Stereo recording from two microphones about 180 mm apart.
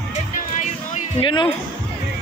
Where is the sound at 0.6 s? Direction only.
40° left (ahead or behind).